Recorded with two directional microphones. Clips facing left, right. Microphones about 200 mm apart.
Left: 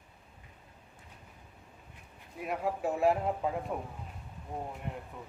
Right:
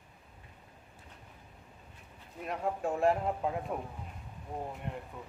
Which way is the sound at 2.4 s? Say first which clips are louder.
Left 1 dB; 5° left (ahead or behind).